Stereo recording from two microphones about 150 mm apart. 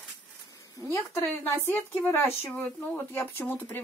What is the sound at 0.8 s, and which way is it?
Speech, 15° left (ahead or behind).